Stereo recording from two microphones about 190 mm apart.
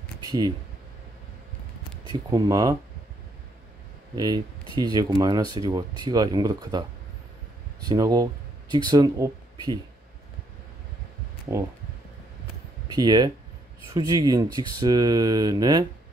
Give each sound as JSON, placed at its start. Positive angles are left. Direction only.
{"t": 0.2, "sound": "speech", "side_deg": -20}
{"t": 2.3, "sound": "speech", "side_deg": -20}
{"t": 4.1, "sound": "speech", "side_deg": -20}
{"t": 7.9, "sound": "speech", "side_deg": -20}
{"t": 12.8, "sound": "speech", "side_deg": -20}